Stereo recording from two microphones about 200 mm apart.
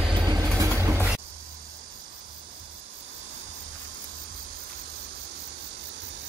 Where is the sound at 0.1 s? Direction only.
20° right (ahead or behind).